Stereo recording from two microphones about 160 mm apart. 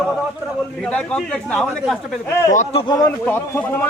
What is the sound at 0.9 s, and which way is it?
A man's voice, 5° left (ahead or behind).